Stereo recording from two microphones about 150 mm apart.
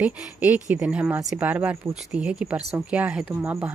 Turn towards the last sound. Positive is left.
turn(degrees=-10)  # may be behind; listen again after turning